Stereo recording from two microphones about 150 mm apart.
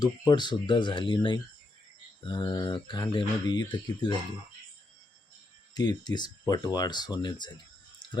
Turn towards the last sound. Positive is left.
turn(degrees=30)  # may be behind; listen again after turning